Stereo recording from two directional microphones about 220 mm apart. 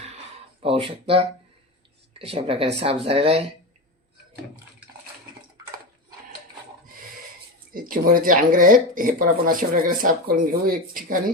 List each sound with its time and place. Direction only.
0.6 s speech: 25° right (ahead or behind)
7.7 s speech: 40° right (ahead or behind)